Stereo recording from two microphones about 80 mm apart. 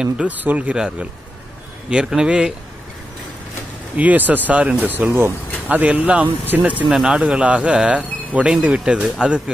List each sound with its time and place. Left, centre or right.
0.0 s speech: centre
3.9 s speech: centre
6.9 s speech: centre